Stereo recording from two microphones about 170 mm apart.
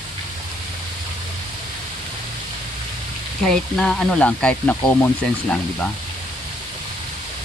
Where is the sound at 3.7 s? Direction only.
5° left (ahead or behind).